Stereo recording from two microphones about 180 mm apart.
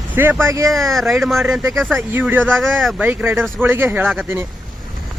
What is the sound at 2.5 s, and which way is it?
Speech, centre (ahead or behind).